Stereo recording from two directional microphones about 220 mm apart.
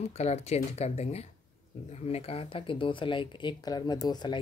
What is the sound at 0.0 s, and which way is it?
Speech, 30° left (ahead or behind).